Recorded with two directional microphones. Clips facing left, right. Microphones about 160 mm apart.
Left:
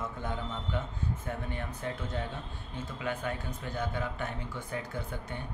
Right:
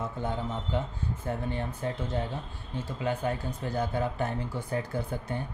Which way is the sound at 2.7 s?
30° right (ahead or behind).